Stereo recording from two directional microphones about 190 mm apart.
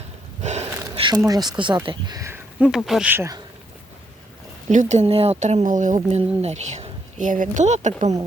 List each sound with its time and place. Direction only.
0.4 s gasp: 35° right (ahead or behind)
0.9 s a sound: 25° right (ahead or behind)
1.3 s speech: 20° right (ahead or behind)
2.6 s speech: centre (ahead or behind)
4.7 s speech: 40° right (ahead or behind)